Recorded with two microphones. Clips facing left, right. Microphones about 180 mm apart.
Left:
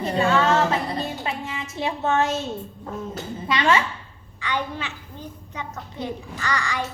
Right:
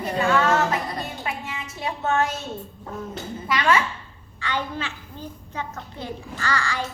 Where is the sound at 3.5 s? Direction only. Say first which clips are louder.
Left 1 dB; 25° left (ahead or behind).